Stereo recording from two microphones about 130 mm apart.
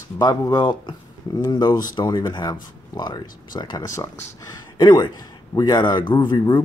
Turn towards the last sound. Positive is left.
turn(degrees=30)  # may be behind; listen again after turning